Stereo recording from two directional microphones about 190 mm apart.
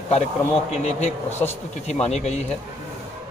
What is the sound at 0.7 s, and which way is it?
A man's voice, 35° left (ahead or behind).